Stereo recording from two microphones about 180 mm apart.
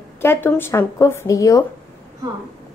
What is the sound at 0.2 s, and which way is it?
A woman's voice, 10° left (ahead or behind).